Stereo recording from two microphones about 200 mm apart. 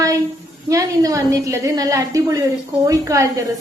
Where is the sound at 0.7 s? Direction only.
15° right (ahead or behind).